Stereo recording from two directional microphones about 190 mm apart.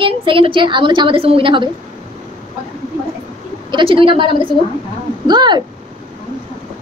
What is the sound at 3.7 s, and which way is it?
Speech, 25° right (ahead or behind).